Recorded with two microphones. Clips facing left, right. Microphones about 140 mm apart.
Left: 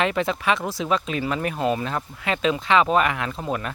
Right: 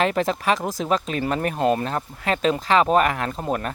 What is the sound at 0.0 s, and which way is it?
Speech, 40° right (ahead or behind).